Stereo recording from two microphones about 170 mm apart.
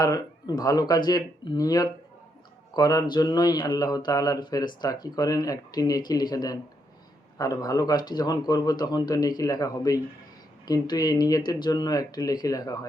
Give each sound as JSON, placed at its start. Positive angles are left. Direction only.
{"t": 0.0, "sound": "speech", "side_deg": 25}